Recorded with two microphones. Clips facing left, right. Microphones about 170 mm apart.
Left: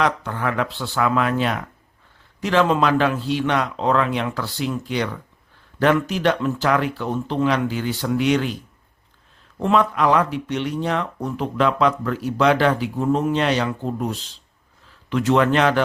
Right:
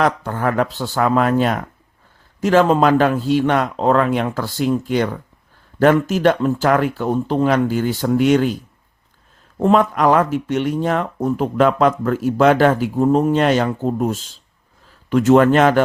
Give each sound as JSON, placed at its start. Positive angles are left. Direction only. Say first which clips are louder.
{"t": 0.0, "sound": "speech", "louder": "right 4 dB", "side_deg": -45}
{"t": 9.6, "sound": "speech", "louder": "right 4 dB", "side_deg": -45}